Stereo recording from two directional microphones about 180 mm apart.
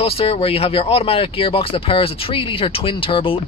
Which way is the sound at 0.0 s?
35° left (ahead or behind).